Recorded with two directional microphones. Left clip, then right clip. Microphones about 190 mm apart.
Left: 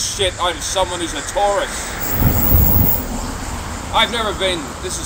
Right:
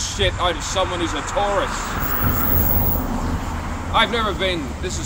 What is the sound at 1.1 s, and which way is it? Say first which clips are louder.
Speech: left 3 dB; 40° right (ahead or behind).